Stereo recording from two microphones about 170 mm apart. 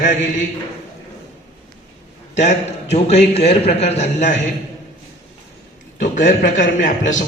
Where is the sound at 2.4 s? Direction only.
40° left (ahead or behind).